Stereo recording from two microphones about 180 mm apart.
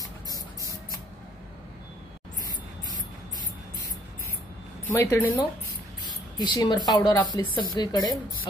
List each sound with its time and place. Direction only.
5.0 s speech: 20° left (ahead or behind)